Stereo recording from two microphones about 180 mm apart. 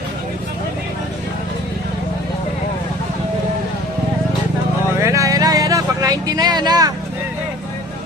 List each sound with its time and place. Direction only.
5.0 s vehicle: 15° right (ahead or behind)